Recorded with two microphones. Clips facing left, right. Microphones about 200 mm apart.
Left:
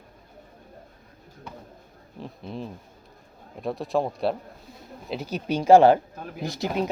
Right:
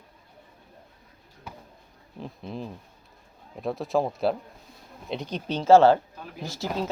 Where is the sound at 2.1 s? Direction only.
Centre (ahead or behind).